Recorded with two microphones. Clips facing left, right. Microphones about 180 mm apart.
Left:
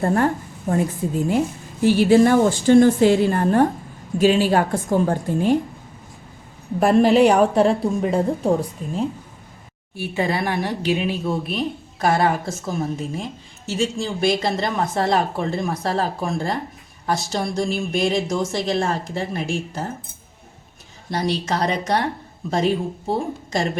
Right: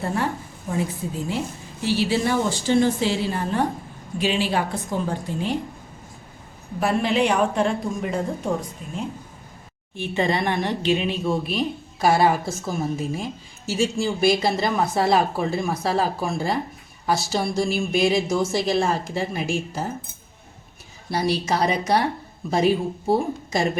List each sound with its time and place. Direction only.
0.0 s a woman's voice: 50° left (ahead or behind)
1.8 s a woman's voice: 50° left (ahead or behind)
6.7 s a woman's voice: 45° left (ahead or behind)
9.9 s speech: 5° left (ahead or behind)
21.1 s speech: 10° right (ahead or behind)